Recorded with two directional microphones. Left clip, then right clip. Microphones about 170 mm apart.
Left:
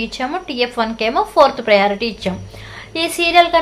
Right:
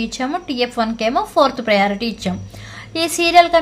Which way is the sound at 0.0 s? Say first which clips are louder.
Left 1 dB; 30° right (ahead or behind).